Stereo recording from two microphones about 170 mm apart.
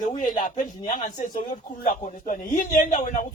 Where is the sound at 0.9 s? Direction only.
45° left (ahead or behind).